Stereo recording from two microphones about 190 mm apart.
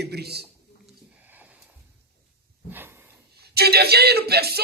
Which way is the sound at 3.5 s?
55° right (ahead or behind).